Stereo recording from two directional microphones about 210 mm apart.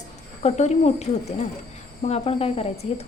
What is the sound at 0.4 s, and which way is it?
Speech, 35° left (ahead or behind).